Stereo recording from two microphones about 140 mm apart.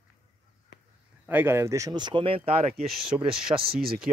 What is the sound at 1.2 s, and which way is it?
Speech, 15° right (ahead or behind).